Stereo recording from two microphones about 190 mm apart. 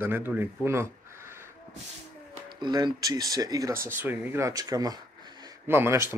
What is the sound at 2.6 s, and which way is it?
A man's voice, 20° right (ahead or behind).